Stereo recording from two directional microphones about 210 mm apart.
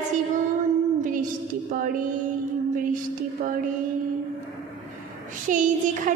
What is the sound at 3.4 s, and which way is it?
Child singing, 40° right (ahead or behind).